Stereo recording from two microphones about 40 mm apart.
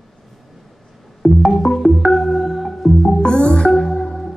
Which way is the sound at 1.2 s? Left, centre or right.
Centre.